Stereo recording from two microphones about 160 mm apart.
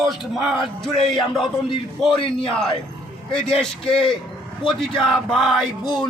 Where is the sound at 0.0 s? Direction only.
Centre (ahead or behind).